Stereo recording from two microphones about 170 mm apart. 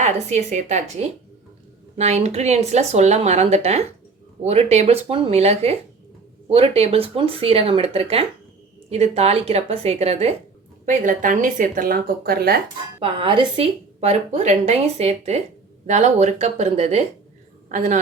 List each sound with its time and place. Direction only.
0.0 s a woman's voice: 40° right (ahead or behind)
10.8 s speech: 50° right (ahead or behind)
13.0 s a woman's voice: 30° right (ahead or behind); by 18.0 s 45° right (ahead or behind)